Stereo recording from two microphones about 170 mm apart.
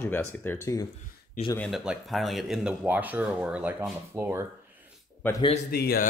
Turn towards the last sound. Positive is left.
turn(degrees=65)  # may be behind; listen again after turning